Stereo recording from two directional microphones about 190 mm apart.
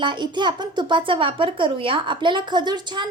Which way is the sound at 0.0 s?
25° right (ahead or behind).